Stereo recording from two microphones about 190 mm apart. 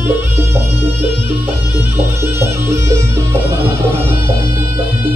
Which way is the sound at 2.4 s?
15° right (ahead or behind).